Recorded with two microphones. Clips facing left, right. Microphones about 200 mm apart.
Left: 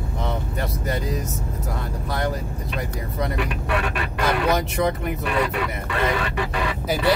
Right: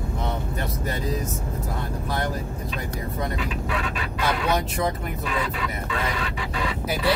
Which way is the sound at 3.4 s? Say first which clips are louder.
Left 3 dB; 65° left (ahead or behind).